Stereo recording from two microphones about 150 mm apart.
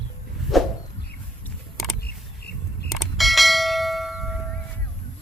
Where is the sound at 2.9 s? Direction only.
Centre (ahead or behind).